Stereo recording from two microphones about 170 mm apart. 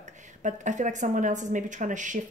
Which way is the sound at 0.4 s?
45° right (ahead or behind).